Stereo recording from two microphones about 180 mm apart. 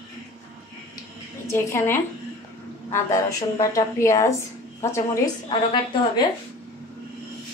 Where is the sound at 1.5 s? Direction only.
15° left (ahead or behind).